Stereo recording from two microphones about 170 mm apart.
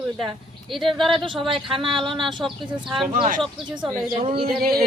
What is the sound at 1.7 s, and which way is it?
Speech, 30° right (ahead or behind).